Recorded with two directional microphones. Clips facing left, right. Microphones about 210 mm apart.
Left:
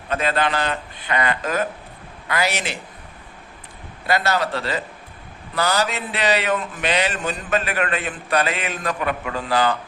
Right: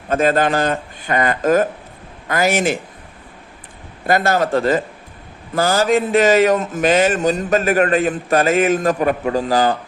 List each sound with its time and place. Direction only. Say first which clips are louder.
0.1 s speech: right 6 dB; 45° right (ahead or behind)
4.0 s speech: right 5 dB; 50° right (ahead or behind)